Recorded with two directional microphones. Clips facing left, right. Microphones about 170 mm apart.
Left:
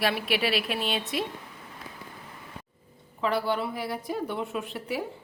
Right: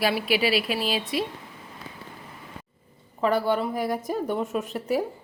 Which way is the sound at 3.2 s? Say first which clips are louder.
Right 4 dB; 45° right (ahead or behind).